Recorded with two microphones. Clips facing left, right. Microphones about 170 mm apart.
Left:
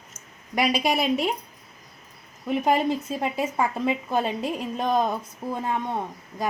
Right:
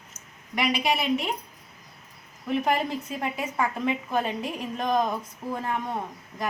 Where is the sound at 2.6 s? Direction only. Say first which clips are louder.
Left 4 dB; 25° left (ahead or behind).